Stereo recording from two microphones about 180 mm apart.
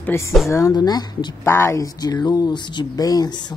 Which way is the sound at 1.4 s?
15° left (ahead or behind).